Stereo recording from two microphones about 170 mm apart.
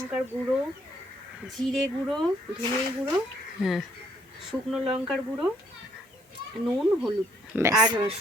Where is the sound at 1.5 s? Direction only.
Centre (ahead or behind).